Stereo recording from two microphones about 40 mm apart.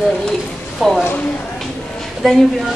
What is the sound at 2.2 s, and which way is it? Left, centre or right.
Speech, centre.